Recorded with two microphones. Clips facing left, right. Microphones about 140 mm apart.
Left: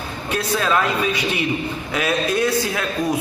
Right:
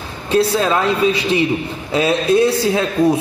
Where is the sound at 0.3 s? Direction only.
30° right (ahead or behind).